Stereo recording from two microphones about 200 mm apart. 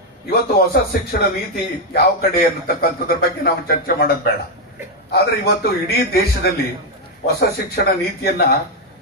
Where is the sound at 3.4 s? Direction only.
50° left (ahead or behind).